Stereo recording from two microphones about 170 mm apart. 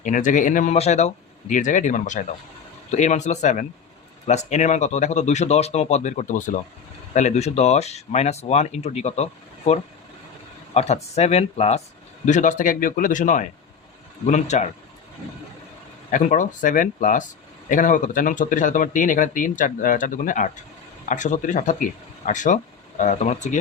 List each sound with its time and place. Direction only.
0.0 s speech: 50° left (ahead or behind)
10.8 s speech: 40° left (ahead or behind)
16.1 s speech: 50° left (ahead or behind)